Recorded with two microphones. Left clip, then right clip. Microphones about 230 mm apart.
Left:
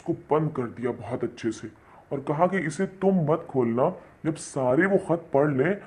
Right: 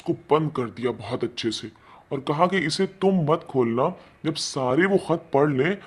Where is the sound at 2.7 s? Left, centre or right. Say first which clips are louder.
Right 3 dB; right.